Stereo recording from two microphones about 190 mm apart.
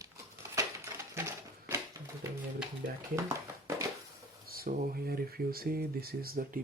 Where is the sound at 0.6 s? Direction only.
15° right (ahead or behind).